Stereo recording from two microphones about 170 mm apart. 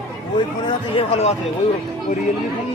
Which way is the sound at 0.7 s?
35° left (ahead or behind).